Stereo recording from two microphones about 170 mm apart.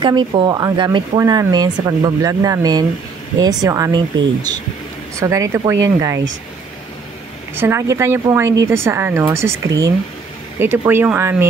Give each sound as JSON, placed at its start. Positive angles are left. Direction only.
{"t": 0.0, "sound": "speech", "side_deg": -30}
{"t": 7.5, "sound": "speech", "side_deg": -15}